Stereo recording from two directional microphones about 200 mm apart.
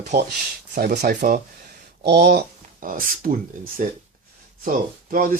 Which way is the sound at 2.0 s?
55° right (ahead or behind).